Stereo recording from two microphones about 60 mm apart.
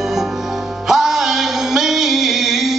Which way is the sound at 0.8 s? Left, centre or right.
Centre.